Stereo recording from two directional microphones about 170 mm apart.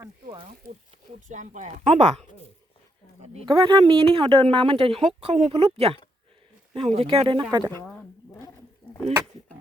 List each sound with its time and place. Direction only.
1.3 s speech: 45° right (ahead or behind)
3.4 s a woman's voice: 25° right (ahead or behind)
7.9 s a sound: 5° left (ahead or behind)